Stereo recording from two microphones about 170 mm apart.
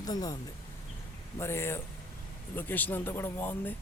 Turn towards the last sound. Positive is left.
turn(degrees=10)  # may be behind; listen again after turning